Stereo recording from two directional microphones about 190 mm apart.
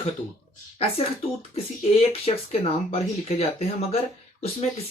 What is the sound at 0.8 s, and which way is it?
Speech, 30° left (ahead or behind).